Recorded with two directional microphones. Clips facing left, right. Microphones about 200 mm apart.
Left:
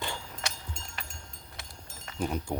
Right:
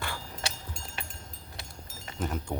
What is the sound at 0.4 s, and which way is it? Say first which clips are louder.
Vehicle: right 2 dB; 30° right (ahead or behind).